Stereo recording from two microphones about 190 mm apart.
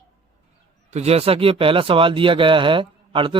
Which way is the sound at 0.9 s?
35° right (ahead or behind).